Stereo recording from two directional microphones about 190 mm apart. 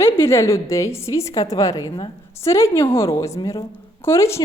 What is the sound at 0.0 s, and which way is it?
A woman's voice, 15° left (ahead or behind).